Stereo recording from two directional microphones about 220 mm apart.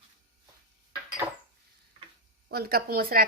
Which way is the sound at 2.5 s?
45° right (ahead or behind).